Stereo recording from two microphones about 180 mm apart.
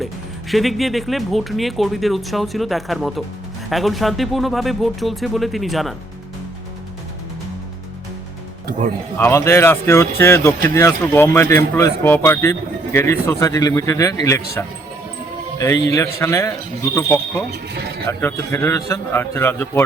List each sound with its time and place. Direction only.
0.5 s speech: centre (ahead or behind)
9.1 s speech: 10° left (ahead or behind)
15.6 s speech: 15° left (ahead or behind)